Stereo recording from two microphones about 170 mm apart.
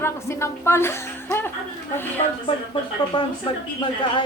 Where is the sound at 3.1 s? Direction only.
30° left (ahead or behind).